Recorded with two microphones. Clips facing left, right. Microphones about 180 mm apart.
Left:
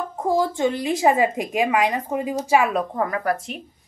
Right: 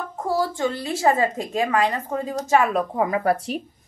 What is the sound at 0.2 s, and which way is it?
A woman's voice, 20° left (ahead or behind).